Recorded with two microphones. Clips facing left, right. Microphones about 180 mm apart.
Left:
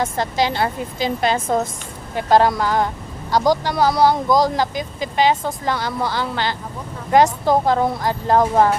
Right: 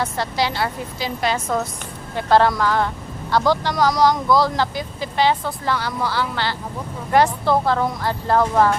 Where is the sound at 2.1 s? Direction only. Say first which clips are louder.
Left 1 dB; 15° left (ahead or behind).